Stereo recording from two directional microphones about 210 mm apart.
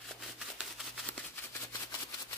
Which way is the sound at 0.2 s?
Centre (ahead or behind).